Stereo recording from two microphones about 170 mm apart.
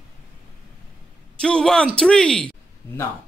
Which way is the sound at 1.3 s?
5° left (ahead or behind).